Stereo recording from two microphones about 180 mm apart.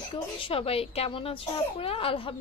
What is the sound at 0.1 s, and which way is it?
A woman's voice, 30° left (ahead or behind).